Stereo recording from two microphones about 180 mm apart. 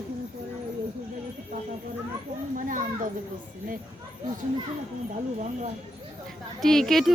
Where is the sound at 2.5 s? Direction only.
45° right (ahead or behind).